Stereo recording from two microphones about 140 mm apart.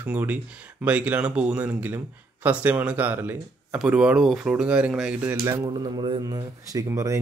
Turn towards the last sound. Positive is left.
turn(degrees=-25)  # may be behind; listen again after turning